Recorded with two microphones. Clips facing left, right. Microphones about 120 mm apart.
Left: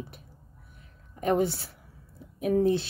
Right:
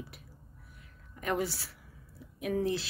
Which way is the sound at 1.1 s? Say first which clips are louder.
Left 7 dB; 30° left (ahead or behind).